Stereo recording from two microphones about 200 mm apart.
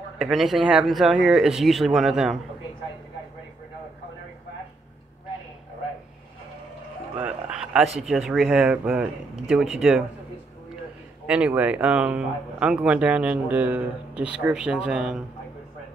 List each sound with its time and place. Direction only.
0.2 s speech: centre (ahead or behind)
7.2 s speech: 5° right (ahead or behind)
11.2 s speech: 5° right (ahead or behind)